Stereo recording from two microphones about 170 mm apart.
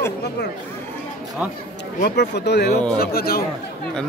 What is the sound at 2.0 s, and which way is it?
Speech, 80° left.